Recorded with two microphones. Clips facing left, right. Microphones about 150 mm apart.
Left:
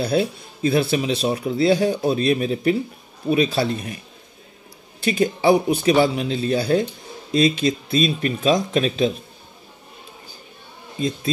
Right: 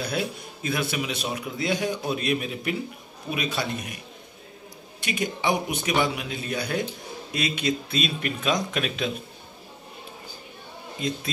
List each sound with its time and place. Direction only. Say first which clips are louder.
0.0 s speech: left 8 dB; 30° left (ahead or behind)
5.0 s speech: left 9 dB; 35° left (ahead or behind)